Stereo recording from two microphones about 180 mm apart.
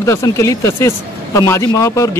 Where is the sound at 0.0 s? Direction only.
15° left (ahead or behind).